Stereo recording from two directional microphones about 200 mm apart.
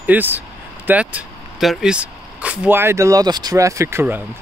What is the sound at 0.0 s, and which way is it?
Speech, 10° right (ahead or behind).